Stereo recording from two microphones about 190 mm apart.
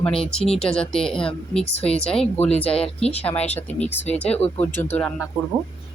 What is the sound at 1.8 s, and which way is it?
Speech, 30° left (ahead or behind).